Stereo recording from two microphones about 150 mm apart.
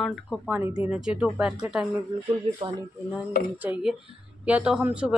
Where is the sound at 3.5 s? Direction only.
10° right (ahead or behind).